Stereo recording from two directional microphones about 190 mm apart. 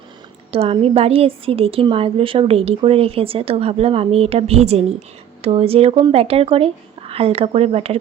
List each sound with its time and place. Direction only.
0.5 s a woman's voice: 30° right (ahead or behind)